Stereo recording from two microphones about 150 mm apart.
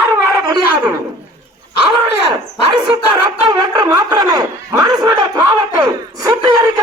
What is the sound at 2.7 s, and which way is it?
Speech, 30° right (ahead or behind).